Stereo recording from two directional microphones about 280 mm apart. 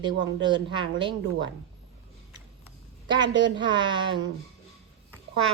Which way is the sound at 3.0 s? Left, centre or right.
Centre.